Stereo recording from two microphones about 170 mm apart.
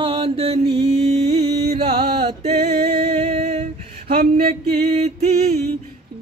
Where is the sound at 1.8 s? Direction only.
30° right (ahead or behind).